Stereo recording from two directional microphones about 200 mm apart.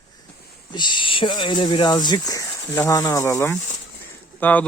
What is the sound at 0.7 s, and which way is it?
Speech, 25° left (ahead or behind).